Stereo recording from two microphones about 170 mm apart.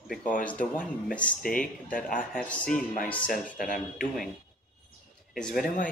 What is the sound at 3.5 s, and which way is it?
Speech, 50° left (ahead or behind).